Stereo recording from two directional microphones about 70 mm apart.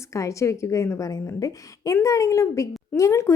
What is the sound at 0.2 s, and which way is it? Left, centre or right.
A woman's voice, left.